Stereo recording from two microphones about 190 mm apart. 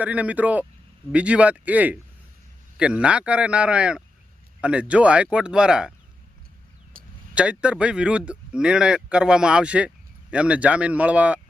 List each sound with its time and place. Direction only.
0.0 s a man's voice: 5° right (ahead or behind)
6.9 s a sound: 50° right (ahead or behind)
7.3 s a man's voice: 5° right (ahead or behind)